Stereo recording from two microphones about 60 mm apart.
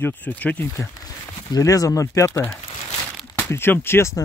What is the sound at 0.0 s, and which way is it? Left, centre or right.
Speech, left.